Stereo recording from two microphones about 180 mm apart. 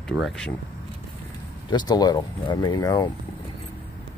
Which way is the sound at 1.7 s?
20° left (ahead or behind).